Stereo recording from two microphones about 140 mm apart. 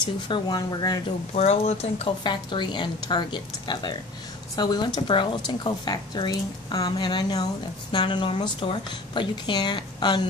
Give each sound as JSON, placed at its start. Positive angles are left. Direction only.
{"t": 0.0, "sound": "speech", "side_deg": 30}
{"t": 1.3, "sound": "speech", "side_deg": 50}
{"t": 2.2, "sound": "speech", "side_deg": 35}